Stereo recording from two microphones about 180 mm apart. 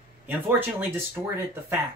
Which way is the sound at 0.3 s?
10° right (ahead or behind).